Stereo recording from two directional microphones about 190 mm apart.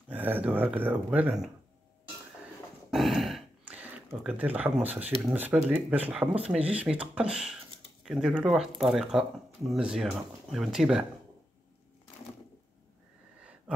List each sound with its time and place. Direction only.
0.1 s speech: 10° right (ahead or behind)
2.9 s a sound: centre (ahead or behind)
5.2 s speech: 10° right (ahead or behind)